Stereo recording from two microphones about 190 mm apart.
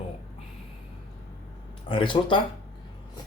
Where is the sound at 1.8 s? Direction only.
25° left (ahead or behind).